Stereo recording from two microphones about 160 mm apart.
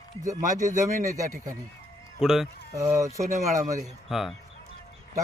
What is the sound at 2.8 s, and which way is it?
Speech, 20° right (ahead or behind).